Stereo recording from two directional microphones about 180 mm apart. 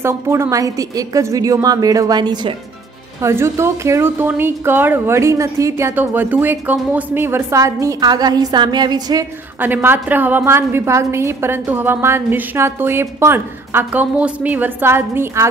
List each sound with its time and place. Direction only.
0.0 s a woman's voice: 15° right (ahead or behind)
9.6 s a woman's voice: 10° right (ahead or behind)